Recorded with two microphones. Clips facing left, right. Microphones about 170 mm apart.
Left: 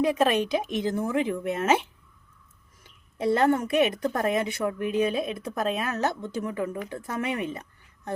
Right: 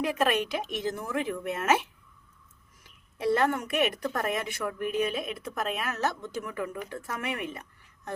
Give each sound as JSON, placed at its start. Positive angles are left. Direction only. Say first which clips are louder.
{"t": 0.2, "sound": "a woman's voice", "louder": "left 4 dB", "side_deg": 20}